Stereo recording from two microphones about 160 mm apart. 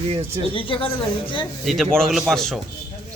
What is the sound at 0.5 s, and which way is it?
Speech, 35° left (ahead or behind).